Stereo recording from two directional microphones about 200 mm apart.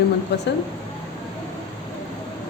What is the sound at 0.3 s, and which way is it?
Speech, 55° left (ahead or behind).